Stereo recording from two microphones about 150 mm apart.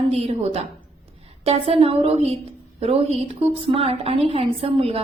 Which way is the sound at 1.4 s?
40° right (ahead or behind).